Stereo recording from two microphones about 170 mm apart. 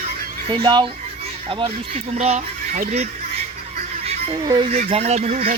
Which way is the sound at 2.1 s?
40° right (ahead or behind).